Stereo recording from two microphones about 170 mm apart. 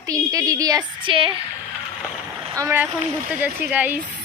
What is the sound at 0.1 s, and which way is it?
A woman's voice, 20° right (ahead or behind).